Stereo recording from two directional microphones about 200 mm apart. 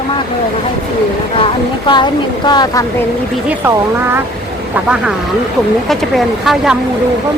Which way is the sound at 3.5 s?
10° right (ahead or behind).